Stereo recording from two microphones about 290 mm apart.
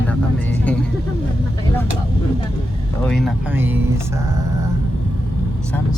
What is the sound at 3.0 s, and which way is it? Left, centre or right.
Speech, centre.